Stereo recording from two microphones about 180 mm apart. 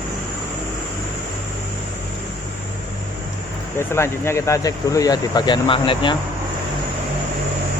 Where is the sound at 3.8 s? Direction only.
15° left (ahead or behind).